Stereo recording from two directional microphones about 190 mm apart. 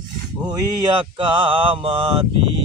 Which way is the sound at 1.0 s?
25° right (ahead or behind).